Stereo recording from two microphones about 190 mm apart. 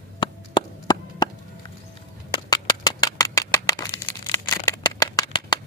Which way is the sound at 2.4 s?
20° left (ahead or behind).